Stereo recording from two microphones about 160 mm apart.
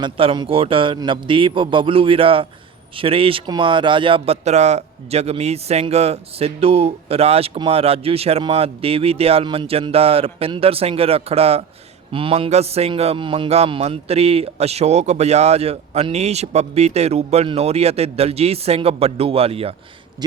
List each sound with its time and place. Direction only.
0.0 s a man's voice: 30° right (ahead or behind)